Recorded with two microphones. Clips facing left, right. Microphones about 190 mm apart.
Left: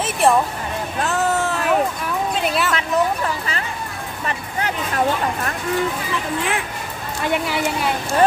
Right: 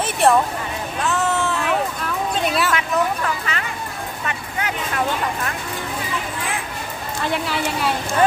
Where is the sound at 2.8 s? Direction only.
30° left (ahead or behind).